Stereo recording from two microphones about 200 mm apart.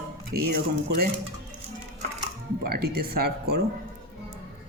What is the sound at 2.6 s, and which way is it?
Speech, 50° right (ahead or behind).